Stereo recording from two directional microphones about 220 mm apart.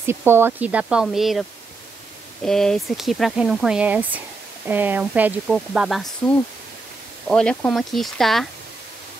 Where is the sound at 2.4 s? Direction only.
Centre (ahead or behind).